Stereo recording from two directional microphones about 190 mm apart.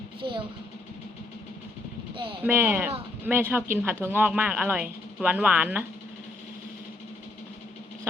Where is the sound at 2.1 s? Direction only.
30° right (ahead or behind).